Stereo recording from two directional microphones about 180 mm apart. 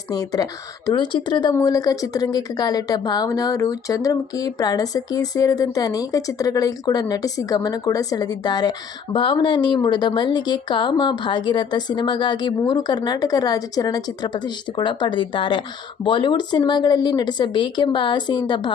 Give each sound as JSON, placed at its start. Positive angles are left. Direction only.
{"t": 0.1, "sound": "speech", "side_deg": 20}